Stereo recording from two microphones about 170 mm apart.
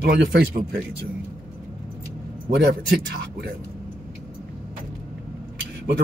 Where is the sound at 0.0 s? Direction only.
65° right (ahead or behind).